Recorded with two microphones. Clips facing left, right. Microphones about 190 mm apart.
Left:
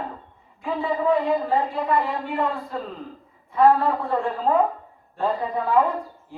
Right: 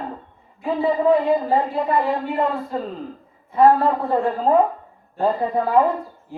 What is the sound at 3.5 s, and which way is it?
A man's voice, 30° right (ahead or behind).